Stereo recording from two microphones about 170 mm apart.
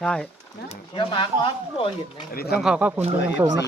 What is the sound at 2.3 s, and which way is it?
Speech, 65° left (ahead or behind).